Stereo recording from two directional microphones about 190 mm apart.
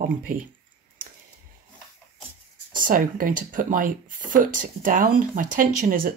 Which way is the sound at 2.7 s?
45° right (ahead or behind).